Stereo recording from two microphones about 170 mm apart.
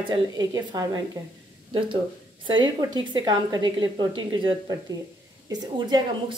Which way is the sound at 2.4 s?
25° right (ahead or behind).